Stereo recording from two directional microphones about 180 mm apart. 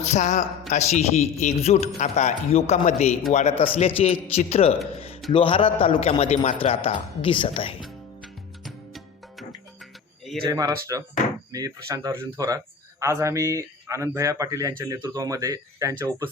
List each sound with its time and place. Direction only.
0.1 s a man's voice: 40° left (ahead or behind)
7.8 s music: centre (ahead or behind)
10.4 s speech: 20° right (ahead or behind)